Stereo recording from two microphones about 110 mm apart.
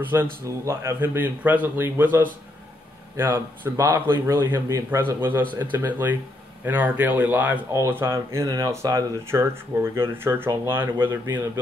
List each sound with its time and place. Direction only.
0.0 s speech: 20° right (ahead or behind)
3.3 s a man's voice: 25° right (ahead or behind)
9.3 s a man's voice: 25° right (ahead or behind)